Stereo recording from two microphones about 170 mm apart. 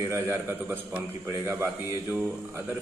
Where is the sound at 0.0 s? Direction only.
15° right (ahead or behind).